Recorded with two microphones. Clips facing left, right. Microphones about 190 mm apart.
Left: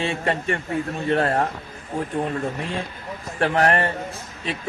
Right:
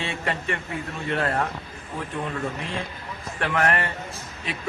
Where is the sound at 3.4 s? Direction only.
35° left (ahead or behind).